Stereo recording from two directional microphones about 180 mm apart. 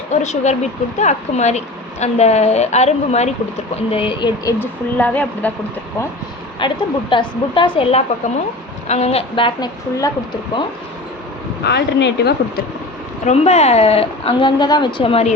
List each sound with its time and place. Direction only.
0.1 s a woman's voice: 40° left (ahead or behind)
4.6 s a woman's voice: 10° left (ahead or behind)
6.6 s a woman's voice: 25° left (ahead or behind)
11.6 s speech: 70° left (ahead or behind)
13.2 s a woman's voice: 35° left (ahead or behind)